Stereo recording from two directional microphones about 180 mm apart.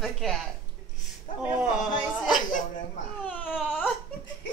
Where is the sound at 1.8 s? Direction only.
Centre (ahead or behind).